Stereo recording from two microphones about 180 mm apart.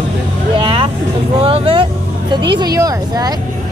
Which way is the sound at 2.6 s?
20° right (ahead or behind).